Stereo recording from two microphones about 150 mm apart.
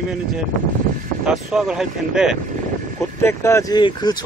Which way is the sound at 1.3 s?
5° right (ahead or behind).